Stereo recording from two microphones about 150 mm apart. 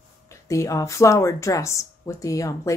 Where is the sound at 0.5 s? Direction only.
20° left (ahead or behind).